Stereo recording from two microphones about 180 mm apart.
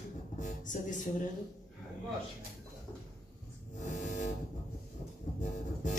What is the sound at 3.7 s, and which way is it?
Vehicle, 45° left (ahead or behind).